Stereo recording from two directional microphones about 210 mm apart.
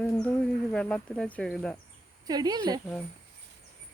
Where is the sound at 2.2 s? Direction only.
20° right (ahead or behind).